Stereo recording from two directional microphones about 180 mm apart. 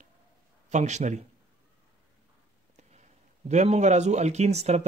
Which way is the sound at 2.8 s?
40° right (ahead or behind).